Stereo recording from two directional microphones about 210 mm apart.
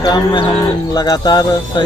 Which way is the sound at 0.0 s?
20° left (ahead or behind).